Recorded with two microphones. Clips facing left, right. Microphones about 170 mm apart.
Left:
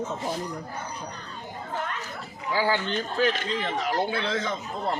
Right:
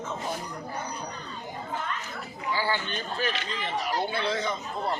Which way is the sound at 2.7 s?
90° left.